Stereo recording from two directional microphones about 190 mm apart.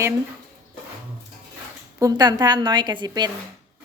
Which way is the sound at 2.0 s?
20° right (ahead or behind).